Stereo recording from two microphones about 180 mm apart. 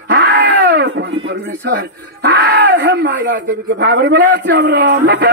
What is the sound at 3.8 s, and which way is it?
A man's voice, 65° right (ahead or behind).